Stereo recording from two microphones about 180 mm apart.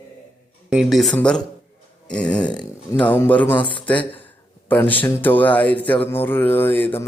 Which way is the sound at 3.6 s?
25° left (ahead or behind).